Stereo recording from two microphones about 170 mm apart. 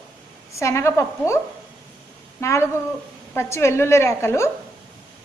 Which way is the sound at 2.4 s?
15° left (ahead or behind).